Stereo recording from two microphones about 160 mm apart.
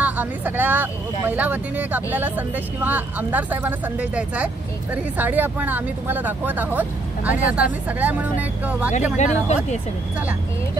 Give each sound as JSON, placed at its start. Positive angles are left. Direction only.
{"t": 0.0, "sound": "speech", "side_deg": -10}
{"t": 9.1, "sound": "speech", "side_deg": 45}